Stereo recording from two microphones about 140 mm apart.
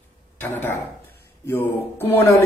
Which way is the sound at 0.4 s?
15° left (ahead or behind).